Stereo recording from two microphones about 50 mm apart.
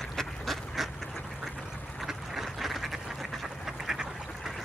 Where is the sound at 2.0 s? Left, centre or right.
Centre.